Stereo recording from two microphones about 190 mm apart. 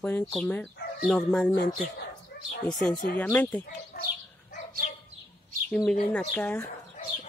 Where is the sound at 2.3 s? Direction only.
60° left (ahead or behind).